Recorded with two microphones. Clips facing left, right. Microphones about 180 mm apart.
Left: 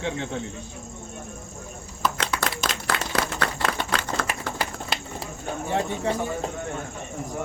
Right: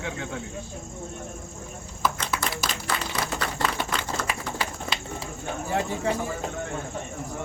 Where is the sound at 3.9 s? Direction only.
65° left (ahead or behind).